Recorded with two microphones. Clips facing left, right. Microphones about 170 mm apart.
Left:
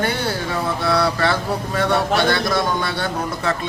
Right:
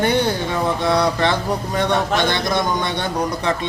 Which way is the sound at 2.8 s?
20° right (ahead or behind).